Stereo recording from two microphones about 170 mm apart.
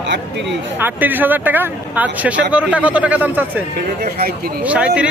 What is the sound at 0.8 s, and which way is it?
Speech, 10° right (ahead or behind).